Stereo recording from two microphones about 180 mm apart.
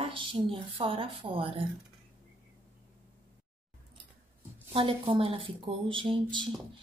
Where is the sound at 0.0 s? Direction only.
30° right (ahead or behind).